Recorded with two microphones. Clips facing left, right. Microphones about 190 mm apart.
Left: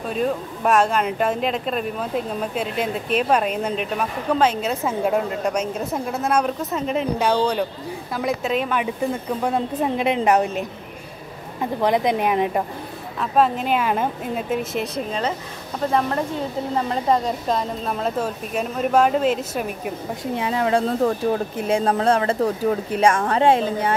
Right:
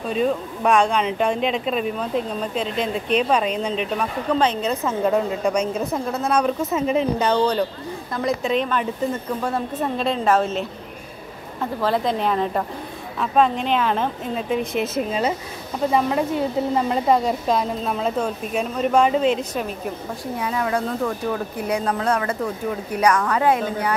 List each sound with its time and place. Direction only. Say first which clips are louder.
0.1 s a woman's voice: right 2 dB; centre (ahead or behind)
7.2 s speech: right 1 dB; 10° left (ahead or behind)
11.8 s a woman's voice: left 2 dB; 15° left (ahead or behind)
20.3 s speech: left 3 dB; 25° left (ahead or behind)
22.8 s speech: right 2 dB; 25° left (ahead or behind)